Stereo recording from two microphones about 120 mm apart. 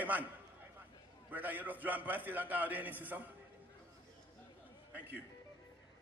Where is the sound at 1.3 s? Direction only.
15° right (ahead or behind).